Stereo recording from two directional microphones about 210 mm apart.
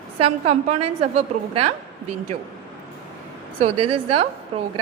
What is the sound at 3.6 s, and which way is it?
A woman's voice, 25° right (ahead or behind).